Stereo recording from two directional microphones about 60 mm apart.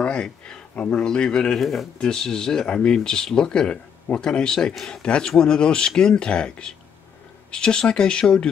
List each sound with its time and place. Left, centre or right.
0.0 s a sound: centre
0.9 s speech: centre
1.6 s speech: centre
2.0 s speech: centre